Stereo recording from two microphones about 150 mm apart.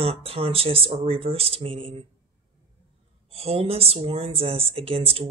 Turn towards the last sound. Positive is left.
turn(degrees=-40)  # may be behind; listen again after turning